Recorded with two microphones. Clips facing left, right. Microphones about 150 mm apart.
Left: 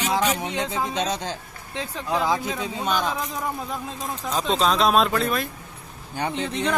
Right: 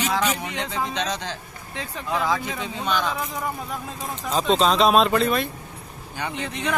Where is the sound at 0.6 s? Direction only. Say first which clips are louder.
Left 2 dB; 10° left (ahead or behind).